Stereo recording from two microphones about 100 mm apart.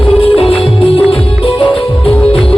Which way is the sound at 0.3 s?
75° left (ahead or behind).